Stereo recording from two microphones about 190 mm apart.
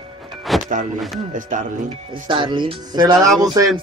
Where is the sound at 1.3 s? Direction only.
45° right (ahead or behind).